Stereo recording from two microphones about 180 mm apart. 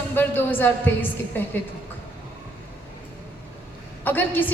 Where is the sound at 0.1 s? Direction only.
10° left (ahead or behind).